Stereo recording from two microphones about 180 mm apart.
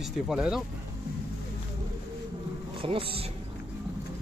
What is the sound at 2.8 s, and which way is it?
Speech, 30° right (ahead or behind).